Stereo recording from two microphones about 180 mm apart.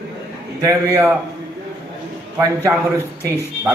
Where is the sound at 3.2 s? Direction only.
15° left (ahead or behind).